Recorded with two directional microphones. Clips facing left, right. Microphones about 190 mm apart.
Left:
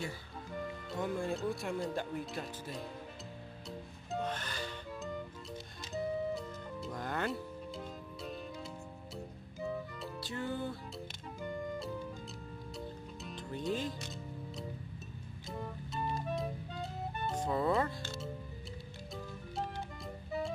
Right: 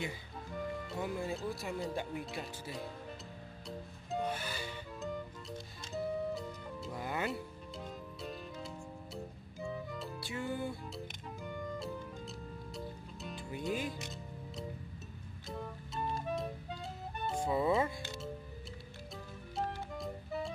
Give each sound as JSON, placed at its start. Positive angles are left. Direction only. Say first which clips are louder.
{"t": 0.8, "sound": "speech", "louder": "left 5 dB", "side_deg": -5}
{"t": 4.2, "sound": "music", "louder": "right 1 dB", "side_deg": -10}
{"t": 5.9, "sound": "music", "louder": "left 1 dB", "side_deg": 0}
{"t": 9.1, "sound": "music", "louder": "even", "side_deg": 0}
{"t": 10.2, "sound": "music", "louder": "left 1 dB", "side_deg": -10}
{"t": 12.7, "sound": "music", "louder": "left 2 dB", "side_deg": -5}
{"t": 17.4, "sound": "music", "louder": "right 1 dB", "side_deg": -10}
{"t": 19.5, "sound": "music", "louder": "right 2 dB", "side_deg": 0}